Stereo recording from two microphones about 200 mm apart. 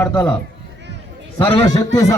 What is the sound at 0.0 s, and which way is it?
Speech, 10° left (ahead or behind).